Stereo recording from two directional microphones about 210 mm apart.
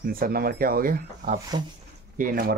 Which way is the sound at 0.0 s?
45° right (ahead or behind).